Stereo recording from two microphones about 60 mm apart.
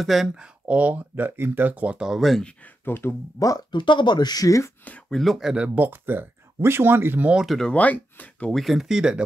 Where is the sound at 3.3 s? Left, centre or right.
Left.